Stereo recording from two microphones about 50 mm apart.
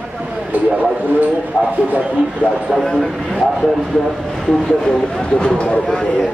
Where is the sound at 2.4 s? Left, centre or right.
Right.